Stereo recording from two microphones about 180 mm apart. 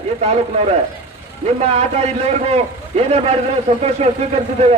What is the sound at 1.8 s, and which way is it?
A man's voice, 35° right (ahead or behind).